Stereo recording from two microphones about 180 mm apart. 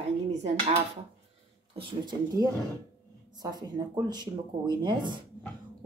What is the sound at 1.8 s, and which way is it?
Speech, 20° right (ahead or behind).